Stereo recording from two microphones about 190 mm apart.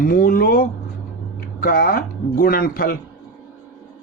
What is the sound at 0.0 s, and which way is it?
A man's voice, 50° left (ahead or behind).